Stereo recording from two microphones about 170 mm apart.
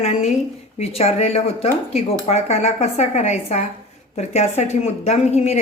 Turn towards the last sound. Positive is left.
turn(degrees=40)  # may be behind; listen again after turning